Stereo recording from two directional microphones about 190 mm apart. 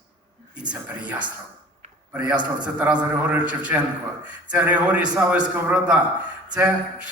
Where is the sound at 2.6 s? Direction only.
5° right (ahead or behind).